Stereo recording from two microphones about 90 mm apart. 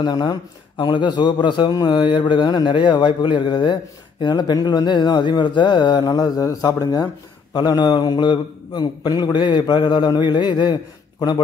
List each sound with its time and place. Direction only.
0.0 s a man's voice: 50° left (ahead or behind)